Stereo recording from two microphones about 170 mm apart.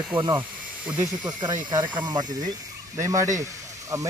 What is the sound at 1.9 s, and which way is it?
Speech, 25° right (ahead or behind).